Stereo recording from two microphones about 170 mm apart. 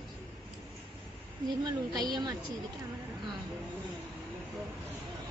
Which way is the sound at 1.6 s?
25° right (ahead or behind).